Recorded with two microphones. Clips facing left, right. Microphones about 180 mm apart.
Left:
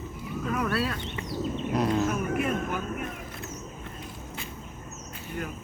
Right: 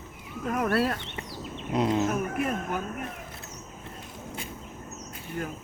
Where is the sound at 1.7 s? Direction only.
20° right (ahead or behind).